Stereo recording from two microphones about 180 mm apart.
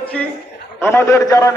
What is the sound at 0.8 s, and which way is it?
Speech, 15° left (ahead or behind).